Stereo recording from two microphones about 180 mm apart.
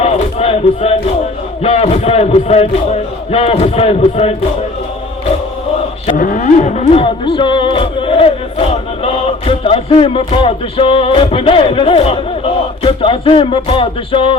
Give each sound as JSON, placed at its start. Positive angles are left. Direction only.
{"t": 0.0, "sound": "a sound", "side_deg": 35}
{"t": 1.6, "sound": "speech", "side_deg": 35}
{"t": 6.1, "sound": "speech", "side_deg": 45}
{"t": 12.8, "sound": "music", "side_deg": 30}